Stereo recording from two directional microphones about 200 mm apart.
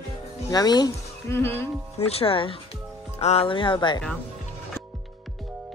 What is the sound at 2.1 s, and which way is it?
Speech, 30° left (ahead or behind).